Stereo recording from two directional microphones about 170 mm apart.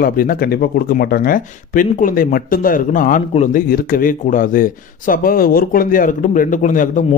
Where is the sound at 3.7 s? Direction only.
60° left (ahead or behind).